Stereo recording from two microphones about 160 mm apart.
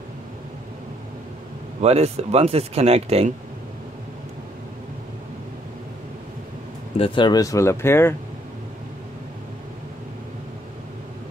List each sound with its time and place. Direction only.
1.8 s speech: 40° right (ahead or behind)
7.0 s speech: 30° left (ahead or behind); by 8.2 s 15° left (ahead or behind)